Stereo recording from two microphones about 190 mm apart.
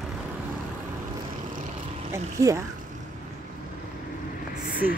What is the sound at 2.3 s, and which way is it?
Speech, 15° right (ahead or behind).